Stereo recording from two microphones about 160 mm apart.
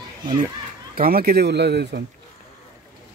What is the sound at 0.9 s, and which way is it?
Speech, 70° right (ahead or behind).